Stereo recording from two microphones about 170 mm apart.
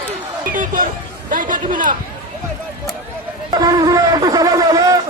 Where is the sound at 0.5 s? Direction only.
50° right (ahead or behind).